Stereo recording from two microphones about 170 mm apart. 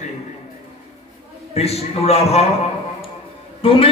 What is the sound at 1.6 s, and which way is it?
Speech, 35° left (ahead or behind).